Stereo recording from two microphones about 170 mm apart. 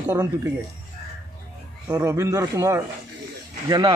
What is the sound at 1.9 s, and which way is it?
Speech, 15° right (ahead or behind).